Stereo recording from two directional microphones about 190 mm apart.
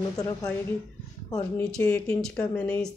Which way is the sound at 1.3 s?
5° left (ahead or behind).